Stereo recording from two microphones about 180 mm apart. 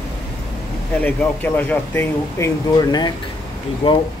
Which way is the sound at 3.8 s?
30° left (ahead or behind).